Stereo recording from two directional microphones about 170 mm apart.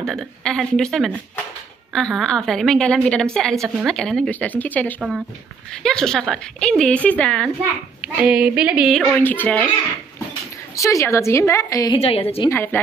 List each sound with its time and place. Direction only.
0.0 s speech: 5° left (ahead or behind)
8.2 s speech: 5° right (ahead or behind)
10.8 s speech: 20° left (ahead or behind)
12.0 s a woman's voice: 35° left (ahead or behind)
12.4 s speech: 10° left (ahead or behind)